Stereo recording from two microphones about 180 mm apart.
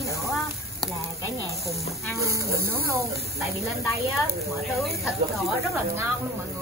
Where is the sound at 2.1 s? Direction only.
15° right (ahead or behind).